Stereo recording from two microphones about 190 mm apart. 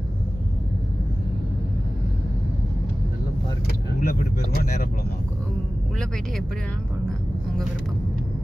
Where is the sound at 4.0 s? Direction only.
50° left (ahead or behind).